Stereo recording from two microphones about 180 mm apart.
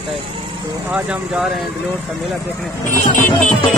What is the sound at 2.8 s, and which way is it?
Speech, 45° left (ahead or behind).